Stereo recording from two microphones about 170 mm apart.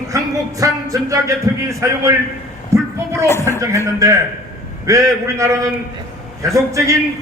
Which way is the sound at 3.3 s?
15° left (ahead or behind).